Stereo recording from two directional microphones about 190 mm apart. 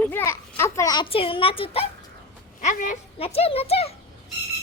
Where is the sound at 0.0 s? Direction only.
10° left (ahead or behind).